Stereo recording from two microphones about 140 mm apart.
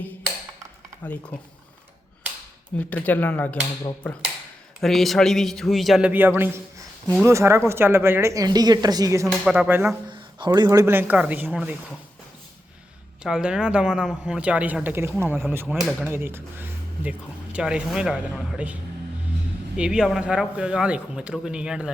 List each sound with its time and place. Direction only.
1.0 s speech: 10° left (ahead or behind)
2.7 s speech: 10° left (ahead or behind)
4.8 s a man's voice: centre (ahead or behind); by 9.3 s 25° right (ahead or behind)
9.4 s speech: 5° right (ahead or behind)
10.1 s speech: 35° right (ahead or behind); by 11.8 s 10° right (ahead or behind)
13.2 s speech: 5° right (ahead or behind)
15.6 s a man's voice: centre (ahead or behind)